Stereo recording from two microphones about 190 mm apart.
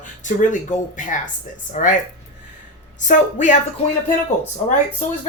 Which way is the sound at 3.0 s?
40° left (ahead or behind).